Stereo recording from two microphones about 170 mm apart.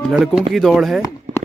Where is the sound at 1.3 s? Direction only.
40° right (ahead or behind).